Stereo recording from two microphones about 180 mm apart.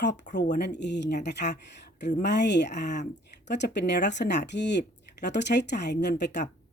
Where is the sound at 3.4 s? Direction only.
75° left (ahead or behind).